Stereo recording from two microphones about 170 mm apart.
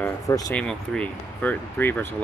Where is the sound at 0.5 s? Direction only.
5° left (ahead or behind).